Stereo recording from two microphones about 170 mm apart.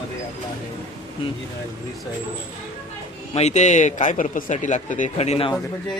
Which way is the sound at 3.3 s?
40° left (ahead or behind).